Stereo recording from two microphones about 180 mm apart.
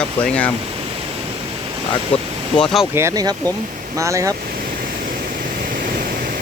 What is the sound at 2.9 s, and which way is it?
Speech, 15° right (ahead or behind).